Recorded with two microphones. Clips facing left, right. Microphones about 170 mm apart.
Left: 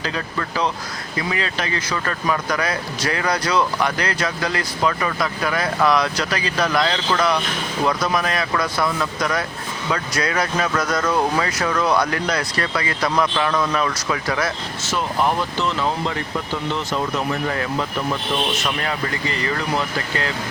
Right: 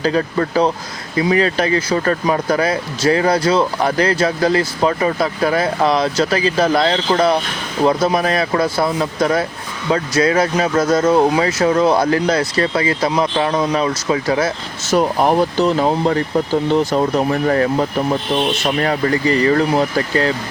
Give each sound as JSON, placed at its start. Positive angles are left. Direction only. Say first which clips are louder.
{"t": 0.0, "sound": "speech", "louder": "right 9 dB", "side_deg": -35}
{"t": 14.8, "sound": "speech", "louder": "right 7 dB", "side_deg": -40}